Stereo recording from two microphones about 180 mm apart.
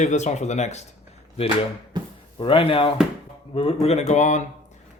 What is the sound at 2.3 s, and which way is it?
Speech, 30° left (ahead or behind).